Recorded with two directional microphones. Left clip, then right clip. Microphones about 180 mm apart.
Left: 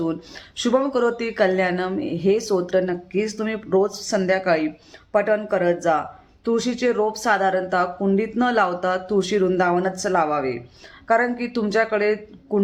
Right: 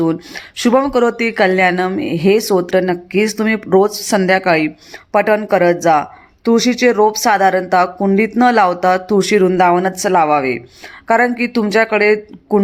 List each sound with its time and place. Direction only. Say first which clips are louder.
0.0 s speech: right 9 dB; 25° right (ahead or behind)